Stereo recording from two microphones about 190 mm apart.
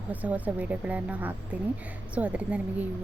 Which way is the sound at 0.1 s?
10° right (ahead or behind).